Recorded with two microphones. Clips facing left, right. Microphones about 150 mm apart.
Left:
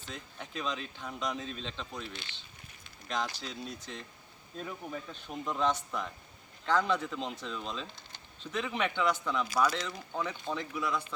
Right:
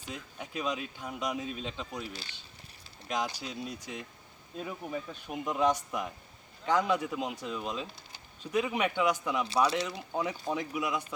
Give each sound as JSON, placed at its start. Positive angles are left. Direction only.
{"t": 0.0, "sound": "speech", "side_deg": -10}
{"t": 9.5, "sound": "speech", "side_deg": -30}
{"t": 10.1, "sound": "speech", "side_deg": -20}